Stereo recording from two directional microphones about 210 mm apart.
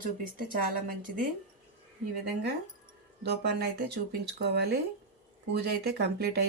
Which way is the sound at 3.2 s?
50° right (ahead or behind).